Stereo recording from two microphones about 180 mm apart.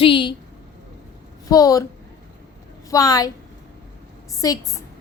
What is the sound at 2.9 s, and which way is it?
Speech, 20° left (ahead or behind).